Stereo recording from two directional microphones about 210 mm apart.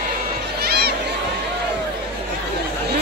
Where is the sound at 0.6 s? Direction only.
50° right (ahead or behind).